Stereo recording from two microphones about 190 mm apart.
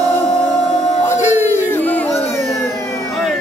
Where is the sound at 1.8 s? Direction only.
10° left (ahead or behind).